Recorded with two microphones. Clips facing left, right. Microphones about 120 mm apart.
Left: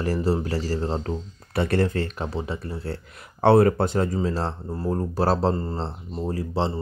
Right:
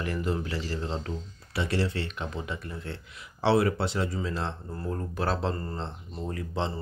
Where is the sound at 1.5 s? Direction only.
55° left (ahead or behind); by 3.0 s 35° left (ahead or behind).